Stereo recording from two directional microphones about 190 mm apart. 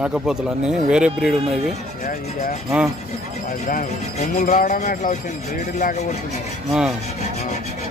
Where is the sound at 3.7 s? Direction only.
45° left (ahead or behind).